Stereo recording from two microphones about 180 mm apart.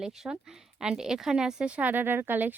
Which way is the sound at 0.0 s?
5° right (ahead or behind).